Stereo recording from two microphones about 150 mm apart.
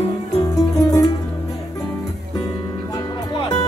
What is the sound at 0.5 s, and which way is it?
Music, 25° left (ahead or behind).